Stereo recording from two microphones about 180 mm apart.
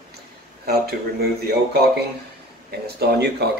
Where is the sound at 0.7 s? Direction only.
60° right (ahead or behind).